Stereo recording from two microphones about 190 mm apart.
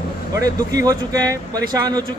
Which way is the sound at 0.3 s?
20° right (ahead or behind).